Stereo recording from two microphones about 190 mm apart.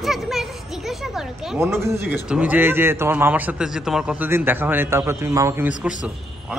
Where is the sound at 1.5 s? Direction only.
15° right (ahead or behind).